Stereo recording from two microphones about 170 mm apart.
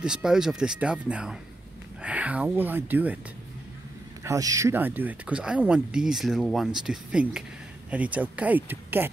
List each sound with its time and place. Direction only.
0.0 s speech: 5° right (ahead or behind)
4.2 s speech: 20° right (ahead or behind)